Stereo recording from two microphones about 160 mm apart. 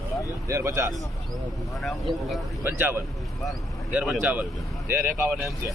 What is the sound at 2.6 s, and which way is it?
Speech, 15° right (ahead or behind).